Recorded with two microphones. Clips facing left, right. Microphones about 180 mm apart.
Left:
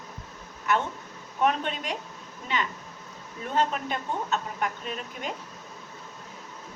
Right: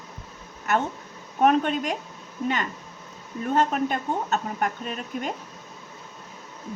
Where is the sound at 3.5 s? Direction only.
50° right (ahead or behind).